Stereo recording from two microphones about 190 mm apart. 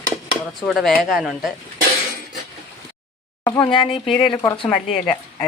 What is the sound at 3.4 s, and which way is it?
Speech, 20° left (ahead or behind).